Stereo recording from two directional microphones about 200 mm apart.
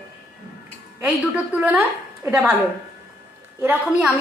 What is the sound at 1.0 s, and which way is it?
A woman's voice, 5° right (ahead or behind).